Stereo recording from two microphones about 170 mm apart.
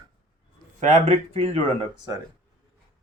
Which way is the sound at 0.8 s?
45° right (ahead or behind).